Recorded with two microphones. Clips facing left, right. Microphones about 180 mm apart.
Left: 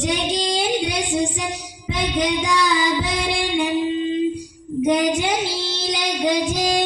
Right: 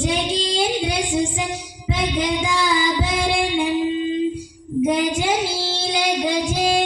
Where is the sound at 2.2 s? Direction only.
25° right (ahead or behind).